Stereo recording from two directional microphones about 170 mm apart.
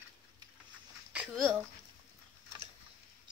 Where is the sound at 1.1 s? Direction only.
5° right (ahead or behind).